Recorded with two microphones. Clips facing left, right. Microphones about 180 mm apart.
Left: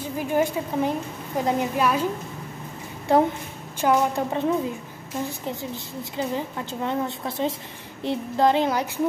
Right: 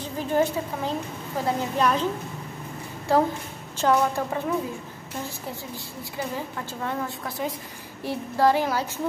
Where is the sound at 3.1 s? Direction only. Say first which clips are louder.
Left 2 dB; 20° left (ahead or behind).